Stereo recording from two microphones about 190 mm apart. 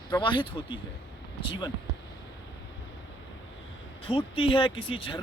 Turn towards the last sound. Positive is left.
turn(degrees=25)  # may be behind; listen again after turning